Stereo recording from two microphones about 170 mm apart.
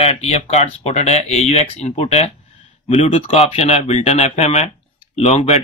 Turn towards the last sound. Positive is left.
turn(degrees=40)  # may be behind; listen again after turning